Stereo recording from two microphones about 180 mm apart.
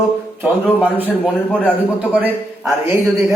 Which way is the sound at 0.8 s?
10° right (ahead or behind).